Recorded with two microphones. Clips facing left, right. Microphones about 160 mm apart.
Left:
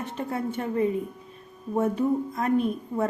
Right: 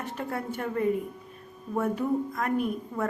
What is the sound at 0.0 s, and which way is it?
A woman's voice, 20° left (ahead or behind).